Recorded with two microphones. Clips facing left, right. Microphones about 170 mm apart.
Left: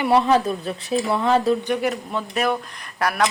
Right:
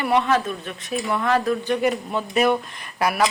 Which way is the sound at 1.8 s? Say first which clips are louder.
Right 2 dB; centre (ahead or behind).